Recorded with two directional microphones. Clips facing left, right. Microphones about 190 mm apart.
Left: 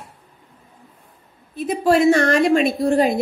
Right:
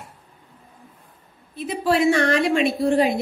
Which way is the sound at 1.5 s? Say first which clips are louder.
Left 4 dB; 45° left (ahead or behind).